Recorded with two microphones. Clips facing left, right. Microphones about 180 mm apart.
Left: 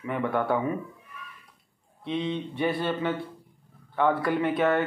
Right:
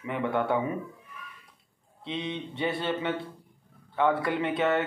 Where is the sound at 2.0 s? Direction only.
20° right (ahead or behind).